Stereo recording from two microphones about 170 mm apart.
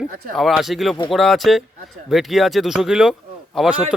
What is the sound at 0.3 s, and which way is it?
Speech, centre (ahead or behind).